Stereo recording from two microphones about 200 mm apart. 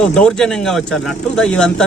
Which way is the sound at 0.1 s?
5° left (ahead or behind).